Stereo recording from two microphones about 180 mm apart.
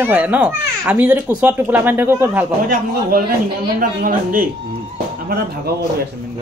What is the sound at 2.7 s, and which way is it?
A man's voice, 50° right (ahead or behind).